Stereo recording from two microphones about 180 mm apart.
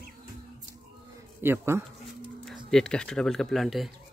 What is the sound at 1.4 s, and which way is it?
Speech, 15° right (ahead or behind).